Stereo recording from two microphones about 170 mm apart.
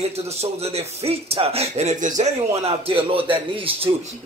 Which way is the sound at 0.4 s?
35° right (ahead or behind).